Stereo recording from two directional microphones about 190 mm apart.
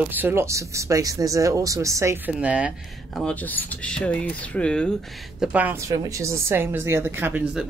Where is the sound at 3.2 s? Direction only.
10° left (ahead or behind).